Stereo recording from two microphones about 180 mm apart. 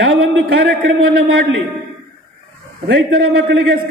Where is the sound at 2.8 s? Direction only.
70° right (ahead or behind).